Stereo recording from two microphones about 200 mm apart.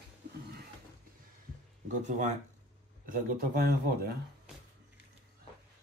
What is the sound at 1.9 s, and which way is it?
Speech, 35° right (ahead or behind).